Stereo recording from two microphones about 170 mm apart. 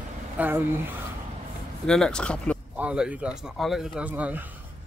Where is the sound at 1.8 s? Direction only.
5° left (ahead or behind).